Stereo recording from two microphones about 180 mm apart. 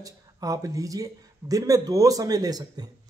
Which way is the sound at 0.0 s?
20° right (ahead or behind).